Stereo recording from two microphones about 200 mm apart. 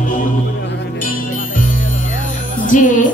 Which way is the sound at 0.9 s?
45° left (ahead or behind).